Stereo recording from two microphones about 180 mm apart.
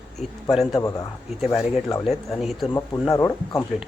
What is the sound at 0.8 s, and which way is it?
Speech, 20° left (ahead or behind).